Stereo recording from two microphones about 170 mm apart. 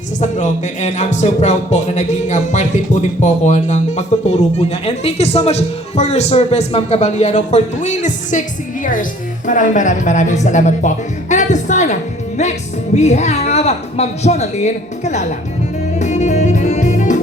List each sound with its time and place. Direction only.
0.2 s speech: 45° left (ahead or behind)
13.0 s speech: 40° left (ahead or behind)
16.0 s music: 45° left (ahead or behind)